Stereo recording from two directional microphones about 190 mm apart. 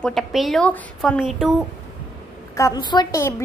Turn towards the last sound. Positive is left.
turn(degrees=20)  # may be behind; listen again after turning